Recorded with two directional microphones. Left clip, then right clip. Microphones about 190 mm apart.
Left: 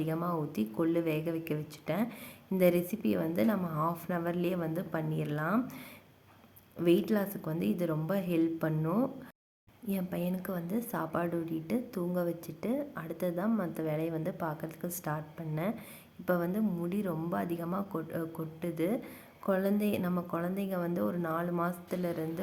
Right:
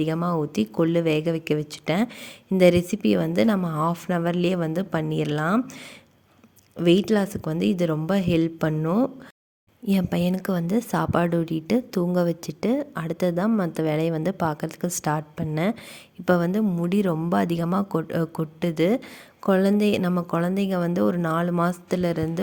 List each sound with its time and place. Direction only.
0.0 s a woman's voice: 45° right (ahead or behind)
6.7 s a woman's voice: 45° right (ahead or behind)